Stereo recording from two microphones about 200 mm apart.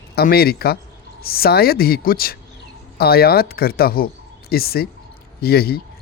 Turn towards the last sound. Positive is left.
turn(degrees=50)  # may be behind; listen again after turning